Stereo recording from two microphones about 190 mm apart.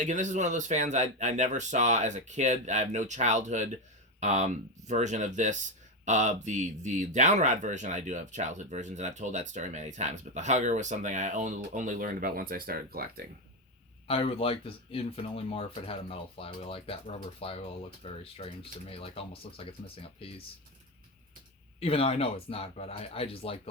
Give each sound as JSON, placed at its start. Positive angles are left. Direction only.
{"t": 0.0, "sound": "speech", "side_deg": -40}
{"t": 14.1, "sound": "speech", "side_deg": 30}
{"t": 21.8, "sound": "speech", "side_deg": 30}